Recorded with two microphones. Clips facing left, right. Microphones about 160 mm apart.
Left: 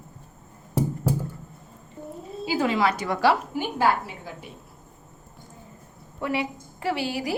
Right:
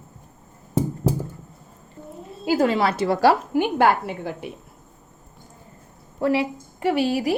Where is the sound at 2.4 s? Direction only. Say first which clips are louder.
Right 5 dB; 45° right (ahead or behind).